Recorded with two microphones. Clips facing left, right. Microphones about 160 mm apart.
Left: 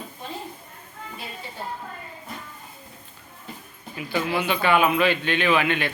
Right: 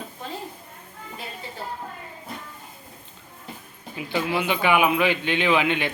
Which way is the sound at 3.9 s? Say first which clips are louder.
Even; 15° right (ahead or behind).